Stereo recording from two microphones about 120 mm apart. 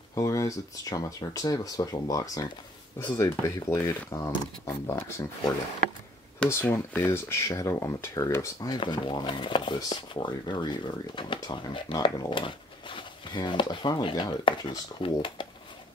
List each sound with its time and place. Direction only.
0.1 s speech: 25° left (ahead or behind)
6.5 s speech: 15° left (ahead or behind)
8.7 s speech: 40° left (ahead or behind)